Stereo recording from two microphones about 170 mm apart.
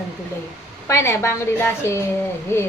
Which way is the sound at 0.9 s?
15° left (ahead or behind).